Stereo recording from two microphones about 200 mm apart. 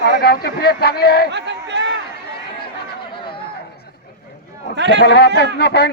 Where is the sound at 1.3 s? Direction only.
60° right (ahead or behind).